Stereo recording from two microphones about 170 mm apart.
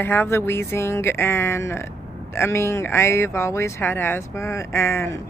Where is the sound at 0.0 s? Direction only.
15° left (ahead or behind).